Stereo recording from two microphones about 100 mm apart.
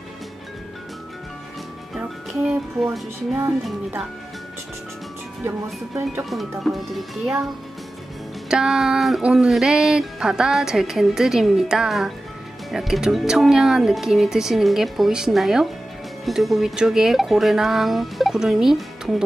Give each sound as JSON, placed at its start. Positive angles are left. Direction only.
{"t": 2.0, "sound": "speech", "side_deg": -10}
{"t": 6.6, "sound": "speech", "side_deg": 0}
{"t": 8.5, "sound": "speech", "side_deg": -5}